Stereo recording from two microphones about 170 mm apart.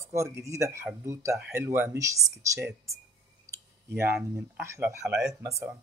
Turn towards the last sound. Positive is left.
turn(degrees=-15)  # may be behind; listen again after turning